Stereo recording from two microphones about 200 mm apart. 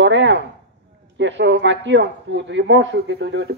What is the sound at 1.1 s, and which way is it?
A woman's voice, 65° right (ahead or behind).